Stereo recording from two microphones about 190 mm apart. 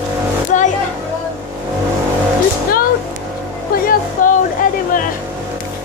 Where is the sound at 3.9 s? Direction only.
45° left (ahead or behind).